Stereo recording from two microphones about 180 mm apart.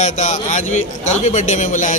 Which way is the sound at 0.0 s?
40° left (ahead or behind).